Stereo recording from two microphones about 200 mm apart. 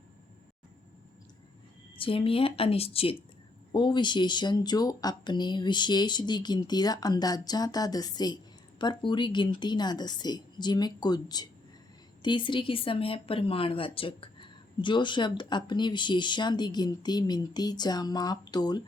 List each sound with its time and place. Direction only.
2.0 s speech: 25° left (ahead or behind)